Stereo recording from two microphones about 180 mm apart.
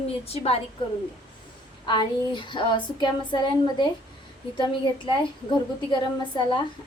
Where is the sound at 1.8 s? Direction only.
25° left (ahead or behind).